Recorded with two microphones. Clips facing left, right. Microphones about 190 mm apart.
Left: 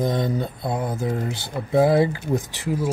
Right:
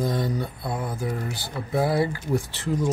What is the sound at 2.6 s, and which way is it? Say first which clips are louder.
Speech: even; 10° left (ahead or behind).